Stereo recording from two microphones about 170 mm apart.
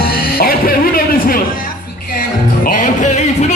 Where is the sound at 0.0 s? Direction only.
60° left (ahead or behind).